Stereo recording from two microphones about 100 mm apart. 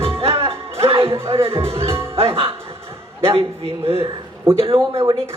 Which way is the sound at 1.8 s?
70° right (ahead or behind).